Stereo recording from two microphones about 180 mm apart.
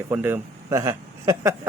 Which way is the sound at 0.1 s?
10° right (ahead or behind).